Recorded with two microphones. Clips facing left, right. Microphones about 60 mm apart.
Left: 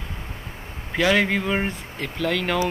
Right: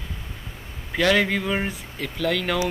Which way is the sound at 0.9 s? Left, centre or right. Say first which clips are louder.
Even; centre.